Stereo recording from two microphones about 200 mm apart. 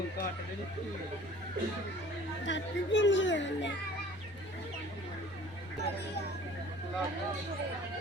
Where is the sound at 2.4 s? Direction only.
65° left (ahead or behind).